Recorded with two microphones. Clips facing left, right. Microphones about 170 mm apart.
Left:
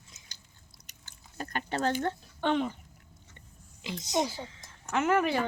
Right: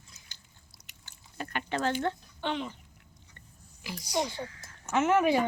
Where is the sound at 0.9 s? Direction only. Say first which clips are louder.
Left 1 dB; 40° left (ahead or behind).